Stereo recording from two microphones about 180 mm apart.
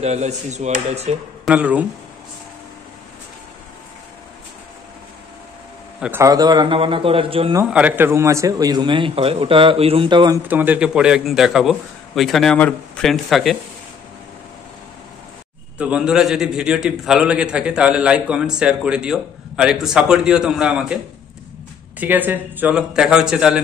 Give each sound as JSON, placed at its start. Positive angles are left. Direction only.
{"t": 0.0, "sound": "speech", "side_deg": -40}
{"t": 1.4, "sound": "speech", "side_deg": -5}
{"t": 5.9, "sound": "a man's voice", "side_deg": -5}
{"t": 6.2, "sound": "a man's voice", "side_deg": -20}
{"t": 7.6, "sound": "a man's voice", "side_deg": -5}
{"t": 10.5, "sound": "a man's voice", "side_deg": -10}
{"t": 15.8, "sound": "a man's voice", "side_deg": -5}
{"t": 22.0, "sound": "a man's voice", "side_deg": -10}